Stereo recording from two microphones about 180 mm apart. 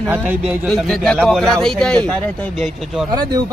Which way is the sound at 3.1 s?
25° right (ahead or behind).